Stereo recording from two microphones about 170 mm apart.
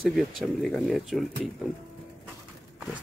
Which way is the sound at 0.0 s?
Centre (ahead or behind).